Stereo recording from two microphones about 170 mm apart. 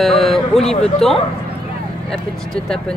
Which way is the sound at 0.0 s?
Centre (ahead or behind).